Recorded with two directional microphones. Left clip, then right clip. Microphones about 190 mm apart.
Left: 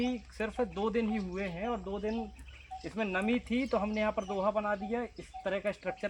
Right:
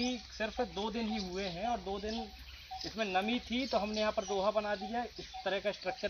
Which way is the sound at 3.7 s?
15° left (ahead or behind).